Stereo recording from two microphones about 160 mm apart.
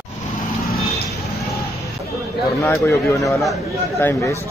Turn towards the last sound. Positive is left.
turn(degrees=15)  # may be behind; listen again after turning